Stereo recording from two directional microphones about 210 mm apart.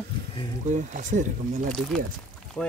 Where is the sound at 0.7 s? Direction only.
35° right (ahead or behind).